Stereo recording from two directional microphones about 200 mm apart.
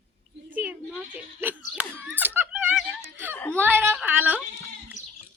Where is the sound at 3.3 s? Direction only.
10° left (ahead or behind).